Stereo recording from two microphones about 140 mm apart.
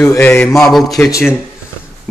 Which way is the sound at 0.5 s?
Centre (ahead or behind).